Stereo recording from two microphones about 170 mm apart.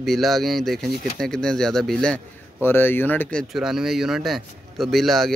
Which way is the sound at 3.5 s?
5° right (ahead or behind).